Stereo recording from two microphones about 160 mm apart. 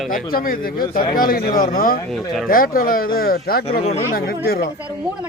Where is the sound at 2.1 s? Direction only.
Centre (ahead or behind).